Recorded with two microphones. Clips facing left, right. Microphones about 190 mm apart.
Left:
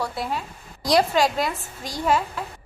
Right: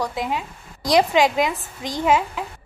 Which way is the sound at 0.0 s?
15° right (ahead or behind).